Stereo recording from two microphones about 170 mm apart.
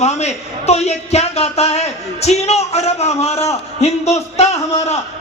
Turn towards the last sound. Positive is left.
turn(degrees=40)  # may be behind; listen again after turning